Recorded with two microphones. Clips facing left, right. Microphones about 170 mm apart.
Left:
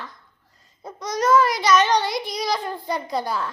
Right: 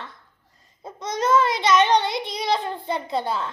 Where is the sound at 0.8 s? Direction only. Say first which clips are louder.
Left 2 dB; 25° right (ahead or behind).